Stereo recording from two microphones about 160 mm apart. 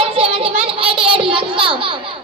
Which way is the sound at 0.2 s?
35° right (ahead or behind).